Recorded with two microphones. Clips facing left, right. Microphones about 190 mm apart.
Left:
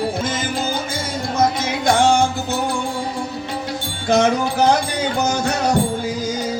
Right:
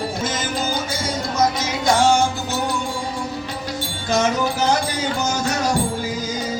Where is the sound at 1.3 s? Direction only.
55° left (ahead or behind).